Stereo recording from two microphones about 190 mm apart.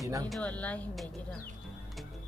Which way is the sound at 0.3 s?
5° left (ahead or behind).